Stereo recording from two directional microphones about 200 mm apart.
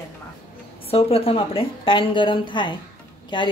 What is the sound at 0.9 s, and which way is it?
A woman's voice, 30° left (ahead or behind).